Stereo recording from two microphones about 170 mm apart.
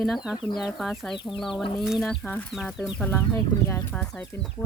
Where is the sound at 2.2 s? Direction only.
10° left (ahead or behind).